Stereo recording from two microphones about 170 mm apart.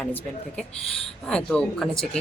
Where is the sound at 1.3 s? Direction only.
5° left (ahead or behind).